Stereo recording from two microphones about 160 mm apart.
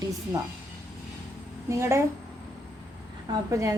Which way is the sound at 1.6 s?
15° right (ahead or behind).